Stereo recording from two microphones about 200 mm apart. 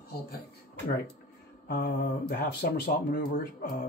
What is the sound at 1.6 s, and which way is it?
Speech, 50° left (ahead or behind).